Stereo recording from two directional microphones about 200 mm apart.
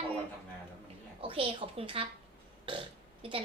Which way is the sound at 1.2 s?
25° right (ahead or behind).